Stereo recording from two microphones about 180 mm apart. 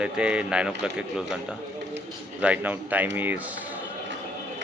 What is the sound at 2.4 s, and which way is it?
A man's voice, 10° right (ahead or behind).